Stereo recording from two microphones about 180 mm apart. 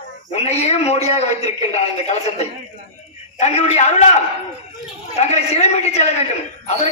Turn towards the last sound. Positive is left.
turn(degrees=35)  # may be behind; listen again after turning